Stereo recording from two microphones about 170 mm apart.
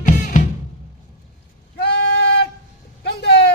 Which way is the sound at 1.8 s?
70° left (ahead or behind).